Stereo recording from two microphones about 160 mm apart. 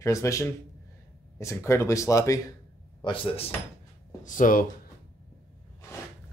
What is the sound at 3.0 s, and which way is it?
Speech, 35° left (ahead or behind).